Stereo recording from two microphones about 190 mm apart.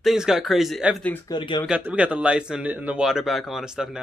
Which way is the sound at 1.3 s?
20° left (ahead or behind).